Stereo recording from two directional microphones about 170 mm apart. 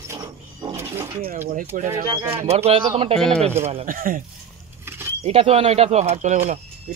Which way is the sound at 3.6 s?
35° right (ahead or behind).